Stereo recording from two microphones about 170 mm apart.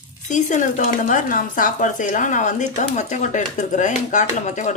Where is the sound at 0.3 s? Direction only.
45° left (ahead or behind).